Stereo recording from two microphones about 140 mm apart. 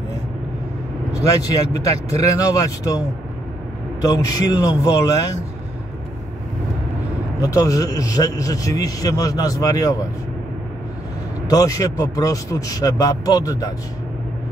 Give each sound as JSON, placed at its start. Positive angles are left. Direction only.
{"t": 1.1, "sound": "a man's voice", "side_deg": 25}
{"t": 4.0, "sound": "a man's voice", "side_deg": 25}
{"t": 7.4, "sound": "a man's voice", "side_deg": 25}
{"t": 11.4, "sound": "a man's voice", "side_deg": 25}